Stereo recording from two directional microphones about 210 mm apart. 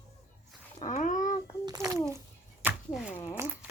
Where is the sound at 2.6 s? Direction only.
10° right (ahead or behind).